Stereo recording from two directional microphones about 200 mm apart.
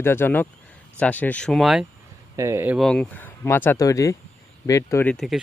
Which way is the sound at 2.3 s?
15° right (ahead or behind).